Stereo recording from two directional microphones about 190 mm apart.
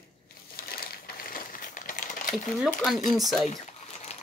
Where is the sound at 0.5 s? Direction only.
50° left (ahead or behind).